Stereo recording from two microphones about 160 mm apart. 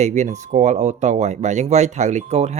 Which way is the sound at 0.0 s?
45° right (ahead or behind).